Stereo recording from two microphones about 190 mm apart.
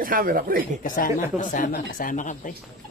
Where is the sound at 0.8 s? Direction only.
45° left (ahead or behind).